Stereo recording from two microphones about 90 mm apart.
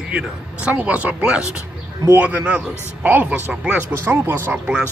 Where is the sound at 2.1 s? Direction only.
20° right (ahead or behind).